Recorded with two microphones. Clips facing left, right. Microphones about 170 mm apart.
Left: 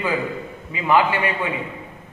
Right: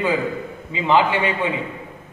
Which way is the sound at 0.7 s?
25° right (ahead or behind).